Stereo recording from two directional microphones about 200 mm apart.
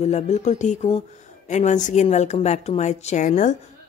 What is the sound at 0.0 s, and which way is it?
A woman's voice, 35° left (ahead or behind).